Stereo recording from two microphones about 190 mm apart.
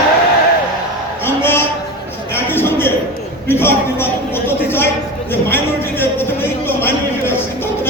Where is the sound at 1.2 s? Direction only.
10° left (ahead or behind).